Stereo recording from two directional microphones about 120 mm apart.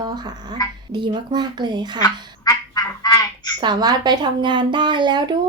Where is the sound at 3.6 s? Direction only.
35° right (ahead or behind).